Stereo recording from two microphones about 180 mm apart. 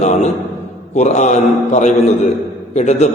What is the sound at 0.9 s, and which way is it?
A man's voice, 40° left (ahead or behind).